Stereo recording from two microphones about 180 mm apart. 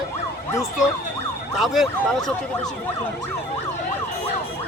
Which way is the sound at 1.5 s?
Centre (ahead or behind).